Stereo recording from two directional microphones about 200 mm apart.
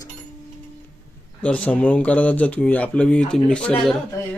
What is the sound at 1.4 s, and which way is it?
Speech, 5° left (ahead or behind).